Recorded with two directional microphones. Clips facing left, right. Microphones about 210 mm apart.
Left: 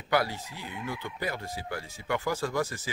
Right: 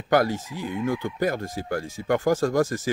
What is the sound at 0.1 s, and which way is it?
Speech, 45° right (ahead or behind).